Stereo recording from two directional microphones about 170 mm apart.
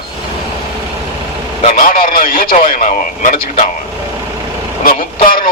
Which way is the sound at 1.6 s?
50° left (ahead or behind).